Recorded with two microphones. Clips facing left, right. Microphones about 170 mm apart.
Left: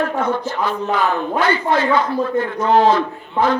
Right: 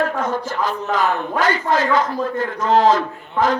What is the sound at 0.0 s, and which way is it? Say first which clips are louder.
A man's voice: left 1 dB; 40° right (ahead or behind).